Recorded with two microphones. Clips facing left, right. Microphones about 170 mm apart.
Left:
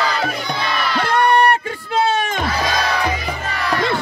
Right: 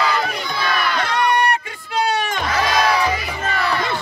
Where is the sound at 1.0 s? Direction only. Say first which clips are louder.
Left 6 dB; 55° left (ahead or behind).